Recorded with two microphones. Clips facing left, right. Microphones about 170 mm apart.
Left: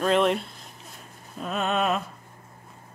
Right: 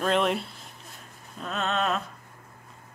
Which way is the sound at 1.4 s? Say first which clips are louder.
Left 3 dB; 10° left (ahead or behind).